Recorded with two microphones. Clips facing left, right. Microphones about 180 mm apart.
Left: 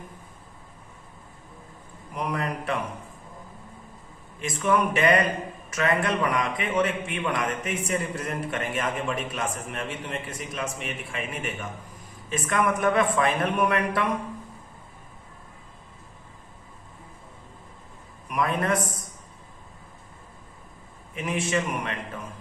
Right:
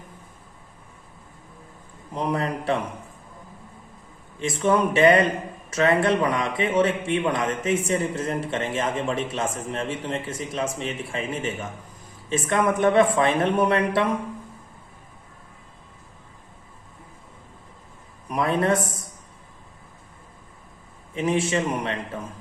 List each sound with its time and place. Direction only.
2.1 s a man's voice: 30° right (ahead or behind)
4.4 s a man's voice: 30° right (ahead or behind)
18.3 s a man's voice: 30° right (ahead or behind)
21.2 s a man's voice: 30° right (ahead or behind)